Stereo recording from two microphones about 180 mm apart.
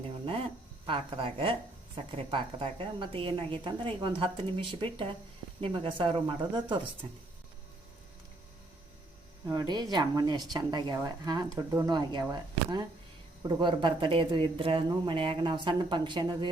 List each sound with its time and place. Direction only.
0.9 s a woman's voice: 30° right (ahead or behind)
9.5 s a woman's voice: 20° right (ahead or behind)
13.5 s a woman's voice: 25° right (ahead or behind)